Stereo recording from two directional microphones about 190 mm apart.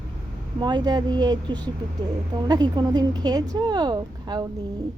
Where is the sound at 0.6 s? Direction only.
25° right (ahead or behind).